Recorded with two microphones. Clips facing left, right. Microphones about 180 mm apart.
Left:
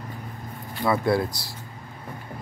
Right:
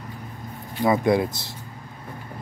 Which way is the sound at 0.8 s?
15° right (ahead or behind).